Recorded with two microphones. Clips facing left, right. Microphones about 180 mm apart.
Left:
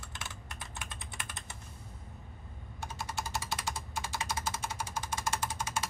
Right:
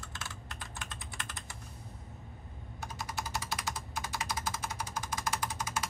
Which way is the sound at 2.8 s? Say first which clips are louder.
Left 1 dB; 25° left (ahead or behind).